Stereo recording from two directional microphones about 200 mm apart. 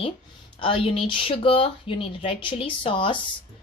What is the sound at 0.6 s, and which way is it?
Speech, 25° left (ahead or behind).